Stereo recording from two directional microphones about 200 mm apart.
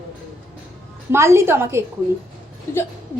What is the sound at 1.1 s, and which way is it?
Speech, 15° right (ahead or behind).